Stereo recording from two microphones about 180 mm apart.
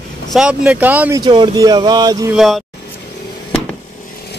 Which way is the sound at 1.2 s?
25° right (ahead or behind).